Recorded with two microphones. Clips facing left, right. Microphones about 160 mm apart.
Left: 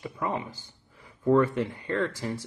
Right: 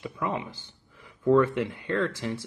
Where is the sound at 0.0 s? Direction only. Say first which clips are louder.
Even; 15° left (ahead or behind).